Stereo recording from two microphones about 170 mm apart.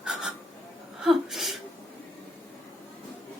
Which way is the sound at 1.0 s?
Centre (ahead or behind).